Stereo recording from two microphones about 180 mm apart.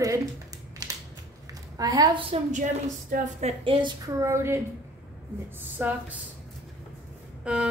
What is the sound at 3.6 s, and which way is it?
A woman's voice, 30° right (ahead or behind).